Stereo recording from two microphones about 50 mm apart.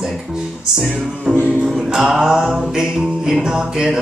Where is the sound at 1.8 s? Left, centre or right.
Centre.